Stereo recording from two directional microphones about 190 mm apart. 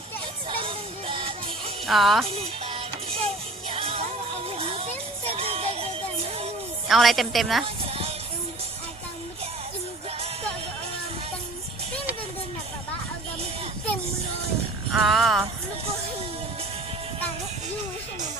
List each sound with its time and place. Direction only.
0.6 s music: 30° right (ahead or behind)
1.9 s a woman's voice: centre (ahead or behind)
2.3 s music: 30° right (ahead or behind)
6.8 s a woman's voice: centre (ahead or behind)
7.6 s sheep: 30° right (ahead or behind)
14.9 s a woman's voice: centre (ahead or behind)